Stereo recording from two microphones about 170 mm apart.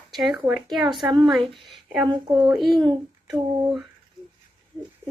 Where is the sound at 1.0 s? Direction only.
25° right (ahead or behind).